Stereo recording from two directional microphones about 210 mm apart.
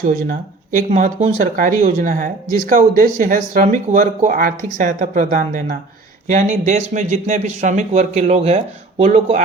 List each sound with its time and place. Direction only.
0.8 s speech: 35° right (ahead or behind)